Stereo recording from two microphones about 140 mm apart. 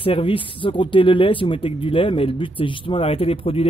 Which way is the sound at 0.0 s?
40° left (ahead or behind).